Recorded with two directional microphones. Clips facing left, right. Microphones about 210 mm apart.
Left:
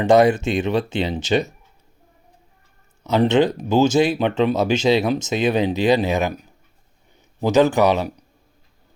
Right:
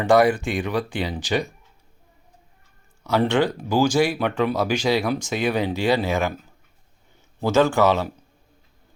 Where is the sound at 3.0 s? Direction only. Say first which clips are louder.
Left 4 dB; 20° left (ahead or behind).